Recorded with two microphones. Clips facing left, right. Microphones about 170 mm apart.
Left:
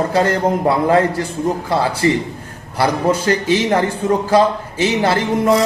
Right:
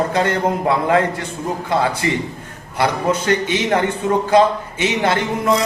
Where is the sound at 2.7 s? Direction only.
35° left (ahead or behind).